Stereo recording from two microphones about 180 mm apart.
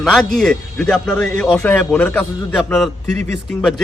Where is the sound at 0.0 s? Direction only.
Centre (ahead or behind).